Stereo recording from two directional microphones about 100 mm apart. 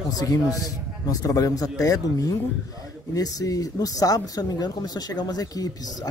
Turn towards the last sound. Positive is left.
turn(degrees=40)  # may be behind; listen again after turning